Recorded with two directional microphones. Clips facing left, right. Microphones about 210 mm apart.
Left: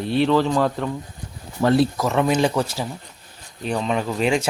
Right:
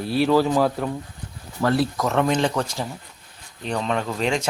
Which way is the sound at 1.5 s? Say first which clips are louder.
Left 4 dB; 20° left (ahead or behind).